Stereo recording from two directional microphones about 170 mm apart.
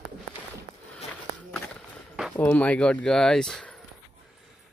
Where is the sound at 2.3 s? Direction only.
10° left (ahead or behind).